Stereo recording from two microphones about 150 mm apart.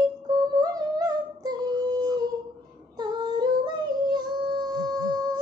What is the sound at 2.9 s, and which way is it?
Synthetic singing, 30° right (ahead or behind).